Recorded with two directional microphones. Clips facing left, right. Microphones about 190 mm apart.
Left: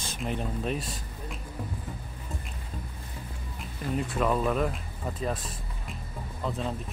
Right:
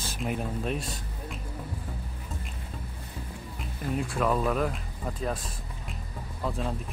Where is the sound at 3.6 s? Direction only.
Centre (ahead or behind).